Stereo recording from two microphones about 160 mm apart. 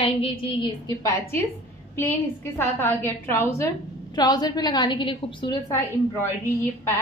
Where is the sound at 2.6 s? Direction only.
15° left (ahead or behind); by 5.5 s 30° left (ahead or behind).